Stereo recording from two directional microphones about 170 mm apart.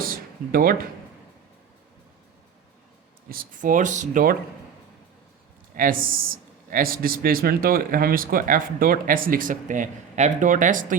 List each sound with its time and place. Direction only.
0.0 s a sound: 60° right (ahead or behind)
3.2 s speech: 55° right (ahead or behind)
5.7 s a man's voice: 55° right (ahead or behind)